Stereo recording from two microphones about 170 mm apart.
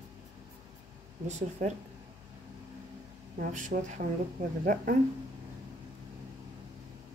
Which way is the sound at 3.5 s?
45° right (ahead or behind).